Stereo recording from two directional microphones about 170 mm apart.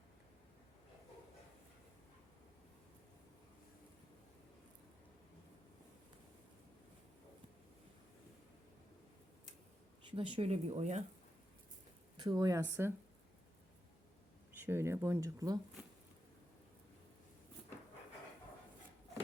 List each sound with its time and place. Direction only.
10.1 s speech: 30° right (ahead or behind)
12.1 s speech: 25° right (ahead or behind)
14.6 s speech: 15° right (ahead or behind)